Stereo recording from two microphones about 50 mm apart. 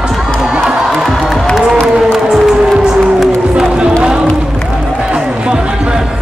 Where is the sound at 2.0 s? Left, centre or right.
Centre.